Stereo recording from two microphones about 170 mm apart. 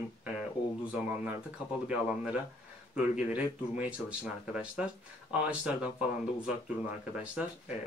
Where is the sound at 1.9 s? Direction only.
5° right (ahead or behind).